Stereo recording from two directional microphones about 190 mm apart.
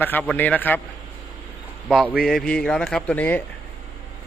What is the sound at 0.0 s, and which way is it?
Speech, 10° left (ahead or behind).